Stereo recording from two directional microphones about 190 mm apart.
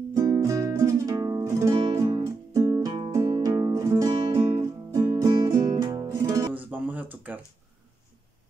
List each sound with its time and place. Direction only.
0.1 s music: 15° right (ahead or behind)